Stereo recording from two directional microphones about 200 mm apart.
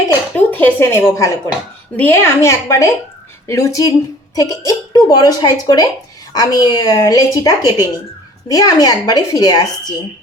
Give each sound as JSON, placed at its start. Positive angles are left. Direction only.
{"t": 0.1, "sound": "a woman's voice", "side_deg": 10}